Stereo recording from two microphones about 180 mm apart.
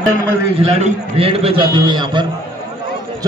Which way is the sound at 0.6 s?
30° right (ahead or behind).